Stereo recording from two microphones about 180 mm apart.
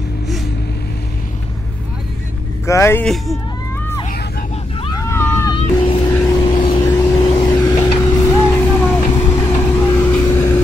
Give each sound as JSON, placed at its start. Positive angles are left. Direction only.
{"t": 2.6, "sound": "speech", "side_deg": 15}
{"t": 4.9, "sound": "vehicle", "side_deg": 15}
{"t": 5.5, "sound": "vehicle", "side_deg": 30}
{"t": 6.0, "sound": "vehicle", "side_deg": 15}